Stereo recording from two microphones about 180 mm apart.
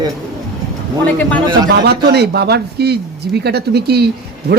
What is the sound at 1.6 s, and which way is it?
A man's voice, 65° right (ahead or behind).